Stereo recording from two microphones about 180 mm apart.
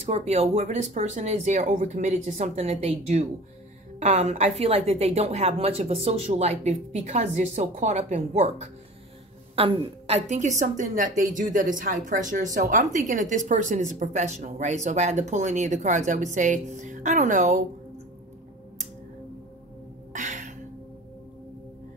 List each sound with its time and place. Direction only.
0.0 s a woman's voice: 35° right (ahead or behind)
20.1 s music: 45° right (ahead or behind)